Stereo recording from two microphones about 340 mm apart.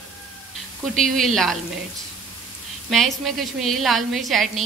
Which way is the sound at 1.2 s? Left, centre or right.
Centre.